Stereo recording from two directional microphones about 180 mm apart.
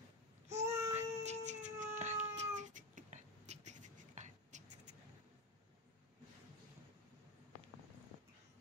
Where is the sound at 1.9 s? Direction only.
40° right (ahead or behind).